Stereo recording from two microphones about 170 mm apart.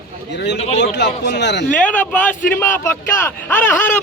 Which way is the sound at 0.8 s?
90° left.